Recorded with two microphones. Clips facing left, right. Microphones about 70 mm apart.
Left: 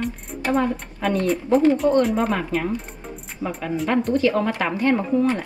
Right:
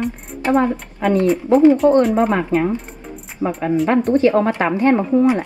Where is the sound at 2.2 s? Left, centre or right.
Right.